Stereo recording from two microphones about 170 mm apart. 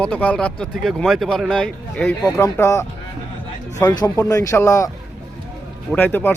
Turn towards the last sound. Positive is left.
turn(degrees=10)  # may be behind; listen again after turning